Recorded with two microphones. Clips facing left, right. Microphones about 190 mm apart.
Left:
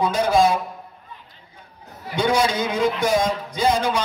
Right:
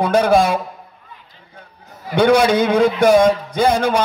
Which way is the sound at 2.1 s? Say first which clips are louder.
Right 7 dB; 60° right (ahead or behind).